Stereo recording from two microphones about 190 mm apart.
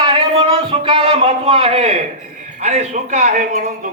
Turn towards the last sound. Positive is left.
turn(degrees=-45)  # may be behind; listen again after turning